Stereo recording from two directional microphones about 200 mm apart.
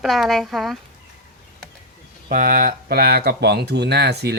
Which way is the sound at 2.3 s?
45° right (ahead or behind).